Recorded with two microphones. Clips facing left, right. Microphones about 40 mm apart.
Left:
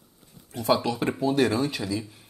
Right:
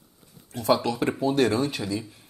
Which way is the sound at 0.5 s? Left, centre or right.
Centre.